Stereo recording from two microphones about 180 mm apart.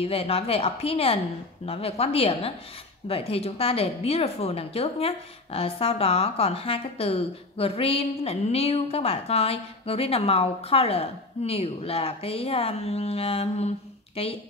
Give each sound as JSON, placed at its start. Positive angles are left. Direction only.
{"t": 0.0, "sound": "speech", "side_deg": 35}